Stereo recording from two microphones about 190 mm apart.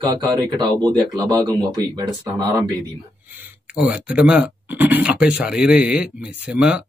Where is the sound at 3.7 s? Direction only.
5° right (ahead or behind).